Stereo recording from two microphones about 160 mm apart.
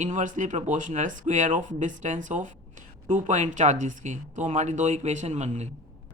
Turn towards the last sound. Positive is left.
turn(degrees=-45)  # may be behind; listen again after turning